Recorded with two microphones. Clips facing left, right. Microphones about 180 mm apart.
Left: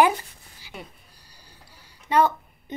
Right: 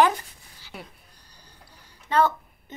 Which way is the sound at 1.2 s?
10° left (ahead or behind).